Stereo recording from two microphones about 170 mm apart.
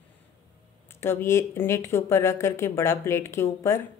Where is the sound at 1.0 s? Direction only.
15° left (ahead or behind).